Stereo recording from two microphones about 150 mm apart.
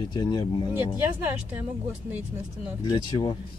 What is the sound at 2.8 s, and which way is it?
Speech, 30° left (ahead or behind).